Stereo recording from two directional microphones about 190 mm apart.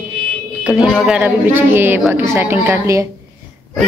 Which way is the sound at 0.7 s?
5° right (ahead or behind).